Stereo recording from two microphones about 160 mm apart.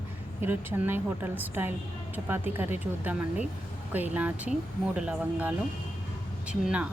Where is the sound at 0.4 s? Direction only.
10° right (ahead or behind).